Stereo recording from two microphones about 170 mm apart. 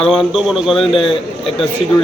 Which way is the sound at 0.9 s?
30° left (ahead or behind).